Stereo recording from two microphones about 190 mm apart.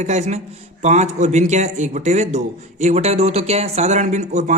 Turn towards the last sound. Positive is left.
turn(degrees=-40)  # may be behind; listen again after turning